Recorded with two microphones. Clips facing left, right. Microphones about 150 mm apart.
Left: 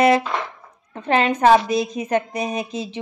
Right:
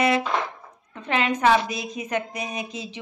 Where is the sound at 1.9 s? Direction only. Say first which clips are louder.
Left 6 dB; 45° left (ahead or behind).